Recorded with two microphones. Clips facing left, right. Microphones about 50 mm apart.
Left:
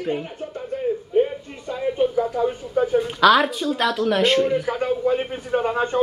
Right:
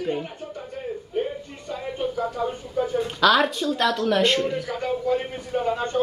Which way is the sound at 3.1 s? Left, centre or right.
Centre.